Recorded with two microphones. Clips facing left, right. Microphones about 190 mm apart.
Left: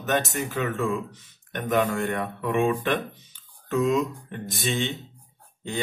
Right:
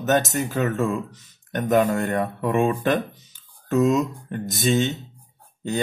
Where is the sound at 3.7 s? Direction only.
45° right (ahead or behind).